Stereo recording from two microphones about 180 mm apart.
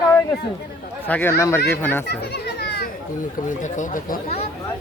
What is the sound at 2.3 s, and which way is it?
Children playing, 65° left (ahead or behind).